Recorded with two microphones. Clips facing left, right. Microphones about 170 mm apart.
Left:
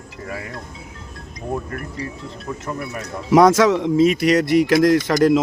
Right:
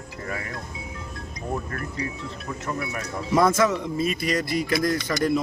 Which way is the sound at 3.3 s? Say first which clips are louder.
Left 7 dB; 90° left.